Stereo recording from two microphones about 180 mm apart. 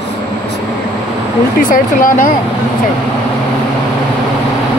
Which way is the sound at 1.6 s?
50° left (ahead or behind).